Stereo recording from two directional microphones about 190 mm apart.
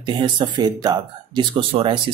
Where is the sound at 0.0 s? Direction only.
25° right (ahead or behind).